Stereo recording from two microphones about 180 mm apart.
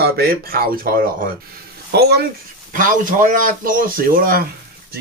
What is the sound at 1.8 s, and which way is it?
Speech, 65° right (ahead or behind).